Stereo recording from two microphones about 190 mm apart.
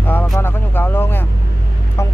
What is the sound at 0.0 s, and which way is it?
Vehicle, 10° left (ahead or behind).